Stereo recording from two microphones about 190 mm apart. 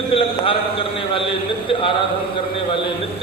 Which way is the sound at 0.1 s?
30° left (ahead or behind).